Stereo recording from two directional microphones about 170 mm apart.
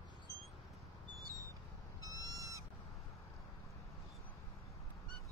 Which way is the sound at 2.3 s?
20° right (ahead or behind).